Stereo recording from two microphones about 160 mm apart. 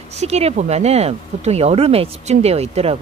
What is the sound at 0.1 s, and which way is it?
A woman's voice, 40° right (ahead or behind).